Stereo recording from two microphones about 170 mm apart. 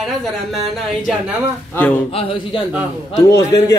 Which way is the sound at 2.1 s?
35° left (ahead or behind).